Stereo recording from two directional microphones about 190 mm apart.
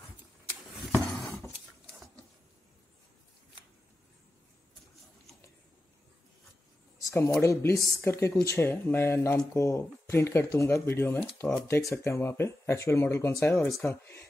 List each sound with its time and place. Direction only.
0.9 s a sound: 10° left (ahead or behind)
7.1 s speech: 15° left (ahead or behind)
11.3 s speech: 5° left (ahead or behind)
11.6 s speech: 15° left (ahead or behind)